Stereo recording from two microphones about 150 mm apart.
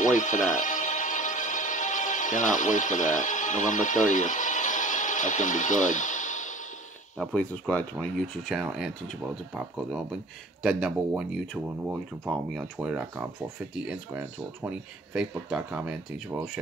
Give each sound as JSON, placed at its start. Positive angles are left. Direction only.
{"t": 0.0, "sound": "music", "side_deg": 55}
{"t": 7.2, "sound": "speech", "side_deg": 10}
{"t": 10.6, "sound": "speech", "side_deg": -5}